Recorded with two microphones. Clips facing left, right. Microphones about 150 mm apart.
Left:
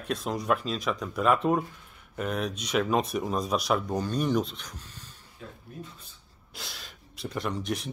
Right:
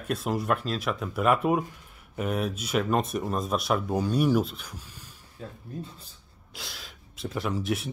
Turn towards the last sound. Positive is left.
turn(degrees=-5)  # may be behind; listen again after turning